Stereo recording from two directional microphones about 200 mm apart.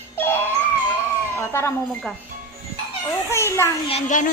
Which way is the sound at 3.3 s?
15° left (ahead or behind).